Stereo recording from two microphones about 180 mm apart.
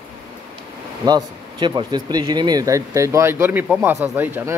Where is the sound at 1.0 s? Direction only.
20° right (ahead or behind).